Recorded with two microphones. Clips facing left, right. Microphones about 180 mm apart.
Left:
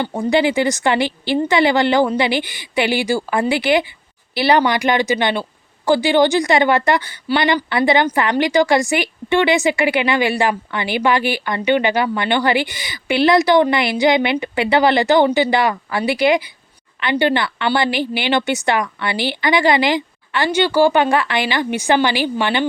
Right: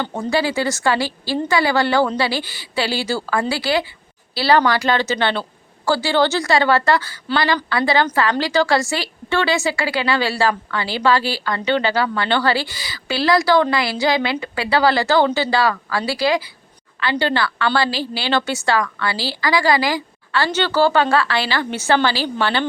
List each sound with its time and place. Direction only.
0.0 s a woman's voice: 15° left (ahead or behind)